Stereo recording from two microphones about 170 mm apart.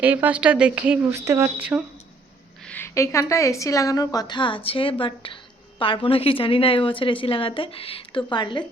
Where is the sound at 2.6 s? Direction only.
10° left (ahead or behind).